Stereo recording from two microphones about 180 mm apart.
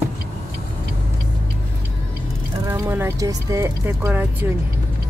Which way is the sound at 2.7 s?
15° right (ahead or behind).